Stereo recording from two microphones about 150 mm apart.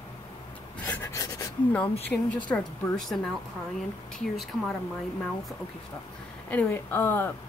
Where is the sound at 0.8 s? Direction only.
10° left (ahead or behind).